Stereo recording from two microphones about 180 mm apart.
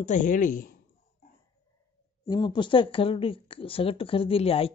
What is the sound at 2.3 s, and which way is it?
Speech, 25° left (ahead or behind).